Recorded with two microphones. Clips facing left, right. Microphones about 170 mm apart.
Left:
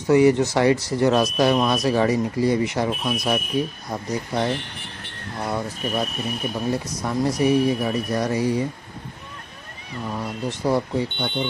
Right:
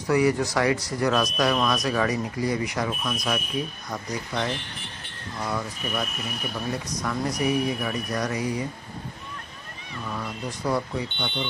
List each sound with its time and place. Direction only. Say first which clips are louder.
0.0 s speech: left 6 dB; 25° left (ahead or behind)
10.0 s speech: left 5 dB; 30° left (ahead or behind)
11.1 s speech: left 5 dB; 45° left (ahead or behind)